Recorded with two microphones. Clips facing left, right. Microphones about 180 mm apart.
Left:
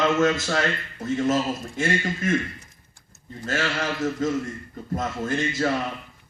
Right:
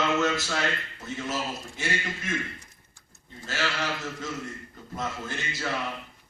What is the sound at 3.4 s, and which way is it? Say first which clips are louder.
A man's voice: left 4 dB; 45° left (ahead or behind).